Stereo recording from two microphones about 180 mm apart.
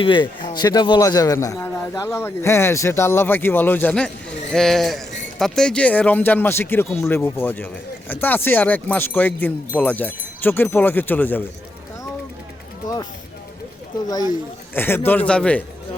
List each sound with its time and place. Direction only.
0.0 s a man's voice: 25° left (ahead or behind); by 11.4 s 10° left (ahead or behind)
12.8 s speech: 45° left (ahead or behind)
14.7 s speech: 10° left (ahead or behind)